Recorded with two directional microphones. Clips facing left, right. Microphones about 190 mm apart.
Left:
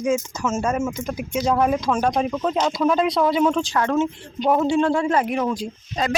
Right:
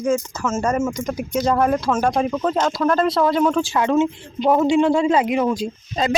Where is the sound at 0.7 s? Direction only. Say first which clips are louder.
Right 3 dB; 5° left (ahead or behind).